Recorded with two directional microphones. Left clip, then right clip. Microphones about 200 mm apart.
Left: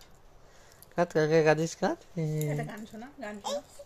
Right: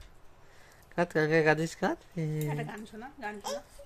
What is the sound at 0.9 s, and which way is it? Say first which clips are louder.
Speech: left 2 dB; centre (ahead or behind).